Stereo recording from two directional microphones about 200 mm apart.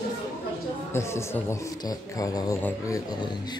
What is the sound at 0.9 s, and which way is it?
A man's voice, 15° left (ahead or behind).